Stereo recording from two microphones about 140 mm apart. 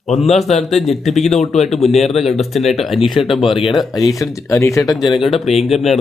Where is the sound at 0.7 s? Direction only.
Centre (ahead or behind).